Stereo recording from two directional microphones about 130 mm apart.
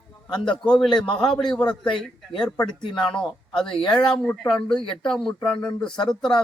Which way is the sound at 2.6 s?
35° left (ahead or behind).